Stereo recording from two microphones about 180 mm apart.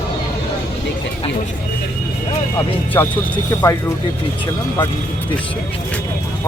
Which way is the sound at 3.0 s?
15° left (ahead or behind).